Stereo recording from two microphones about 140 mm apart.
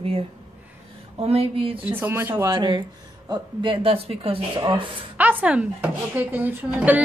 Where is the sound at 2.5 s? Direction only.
35° right (ahead or behind).